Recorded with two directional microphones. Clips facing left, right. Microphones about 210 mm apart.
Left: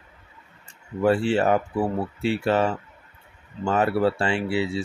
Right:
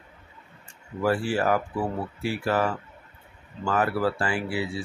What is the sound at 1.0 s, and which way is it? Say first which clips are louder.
Speech: left 4 dB; 25° left (ahead or behind).